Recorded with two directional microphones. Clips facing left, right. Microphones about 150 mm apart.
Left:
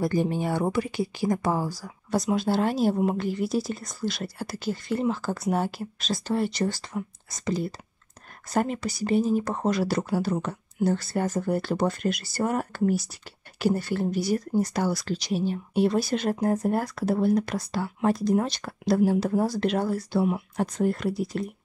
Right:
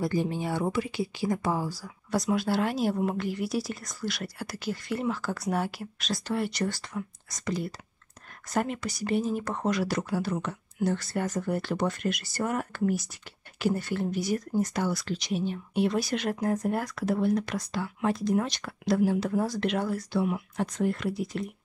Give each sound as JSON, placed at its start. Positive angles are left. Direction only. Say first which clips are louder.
{"t": 0.0, "sound": "speech", "louder": "left 3 dB", "side_deg": 45}
{"t": 2.0, "sound": "speech", "louder": "left 2 dB", "side_deg": 25}